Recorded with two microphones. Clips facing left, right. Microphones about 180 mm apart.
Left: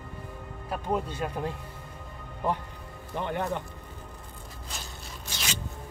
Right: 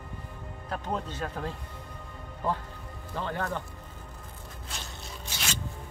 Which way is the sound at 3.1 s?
20° left (ahead or behind).